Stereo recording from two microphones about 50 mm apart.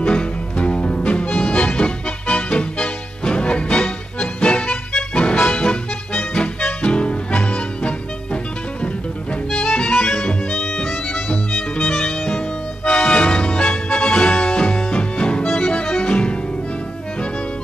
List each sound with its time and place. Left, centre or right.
0.1 s music: left
6.8 s music: left
10.0 s music: centre
12.8 s music: centre
15.4 s accordion: centre
16.1 s music: left